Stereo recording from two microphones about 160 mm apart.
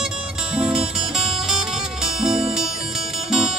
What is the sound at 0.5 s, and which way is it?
Music, 5° right (ahead or behind).